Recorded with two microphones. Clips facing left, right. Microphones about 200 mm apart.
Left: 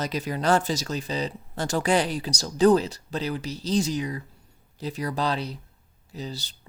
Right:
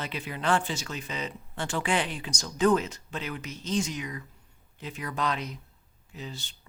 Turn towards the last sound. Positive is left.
turn(degrees=35)  # may be behind; listen again after turning